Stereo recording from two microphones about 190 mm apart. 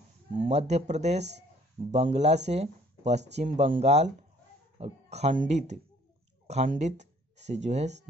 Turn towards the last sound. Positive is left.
turn(degrees=-35)  # may be behind; listen again after turning